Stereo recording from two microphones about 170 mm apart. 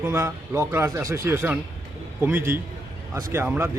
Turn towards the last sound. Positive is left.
turn(degrees=-15)  # may be behind; listen again after turning